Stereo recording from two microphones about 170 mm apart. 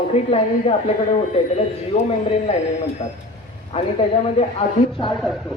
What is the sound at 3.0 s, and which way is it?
Speech, 40° left (ahead or behind).